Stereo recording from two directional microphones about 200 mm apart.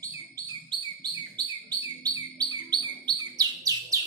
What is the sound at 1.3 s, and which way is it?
Bird, 20° right (ahead or behind).